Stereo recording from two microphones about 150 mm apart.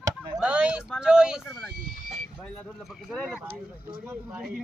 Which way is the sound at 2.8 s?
Centre (ahead or behind).